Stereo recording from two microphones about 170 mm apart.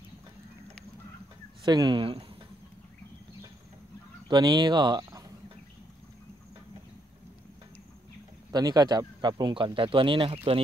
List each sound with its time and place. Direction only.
1.6 s speech: 25° right (ahead or behind)
4.3 s speech: 25° right (ahead or behind)
8.5 s speech: 25° right (ahead or behind)